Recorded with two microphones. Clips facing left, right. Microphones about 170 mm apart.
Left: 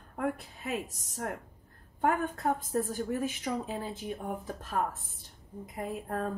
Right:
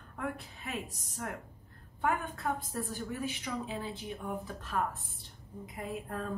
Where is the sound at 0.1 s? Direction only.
40° left (ahead or behind).